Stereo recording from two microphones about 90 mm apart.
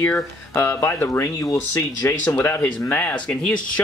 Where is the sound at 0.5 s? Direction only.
30° left (ahead or behind).